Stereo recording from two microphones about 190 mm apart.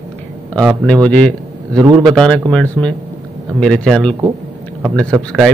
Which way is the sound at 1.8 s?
20° right (ahead or behind).